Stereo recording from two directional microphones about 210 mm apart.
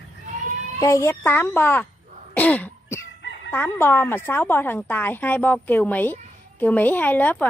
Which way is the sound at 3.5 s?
10° left (ahead or behind).